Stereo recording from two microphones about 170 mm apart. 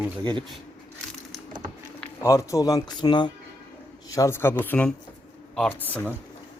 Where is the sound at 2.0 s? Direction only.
15° left (ahead or behind).